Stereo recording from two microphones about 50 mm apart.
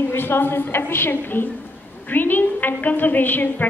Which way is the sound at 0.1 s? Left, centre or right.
Left.